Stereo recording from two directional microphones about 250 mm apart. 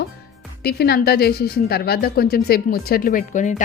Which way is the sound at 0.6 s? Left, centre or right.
Left.